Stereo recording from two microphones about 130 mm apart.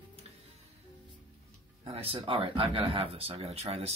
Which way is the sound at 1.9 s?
45° right (ahead or behind).